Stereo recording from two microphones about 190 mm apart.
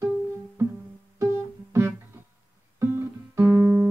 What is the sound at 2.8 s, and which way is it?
Music, 15° right (ahead or behind).